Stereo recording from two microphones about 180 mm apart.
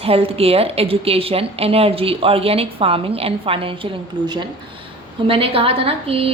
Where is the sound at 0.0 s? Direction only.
35° right (ahead or behind).